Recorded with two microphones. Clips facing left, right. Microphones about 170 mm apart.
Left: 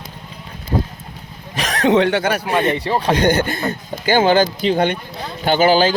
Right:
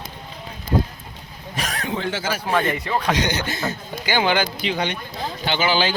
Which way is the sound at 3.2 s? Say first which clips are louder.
Left 7 dB; 55° left (ahead or behind).